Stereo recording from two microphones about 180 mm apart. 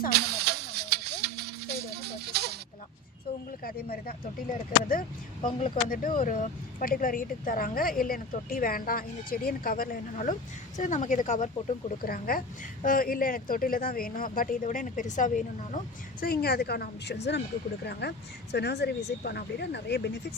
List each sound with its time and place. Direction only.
0.2 s a sound: 65° right (ahead or behind)
3.6 s a woman's voice: 55° left (ahead or behind)
5.5 s speech: 30° left (ahead or behind)
5.9 s speech: 50° left (ahead or behind)
12.0 s speech: 55° left (ahead or behind)
16.2 s a woman's voice: 60° left (ahead or behind)